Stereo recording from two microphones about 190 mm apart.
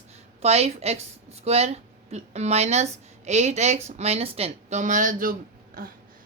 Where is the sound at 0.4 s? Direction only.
35° right (ahead or behind).